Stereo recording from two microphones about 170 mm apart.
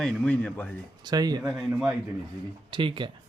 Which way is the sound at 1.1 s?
25° right (ahead or behind).